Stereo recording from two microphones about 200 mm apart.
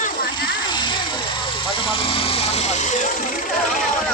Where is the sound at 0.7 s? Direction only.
20° left (ahead or behind).